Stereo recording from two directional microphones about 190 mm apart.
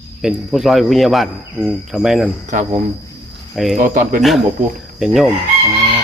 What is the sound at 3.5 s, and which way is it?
Speech, centre (ahead or behind).